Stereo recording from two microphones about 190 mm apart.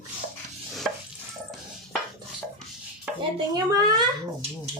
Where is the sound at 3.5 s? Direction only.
20° right (ahead or behind).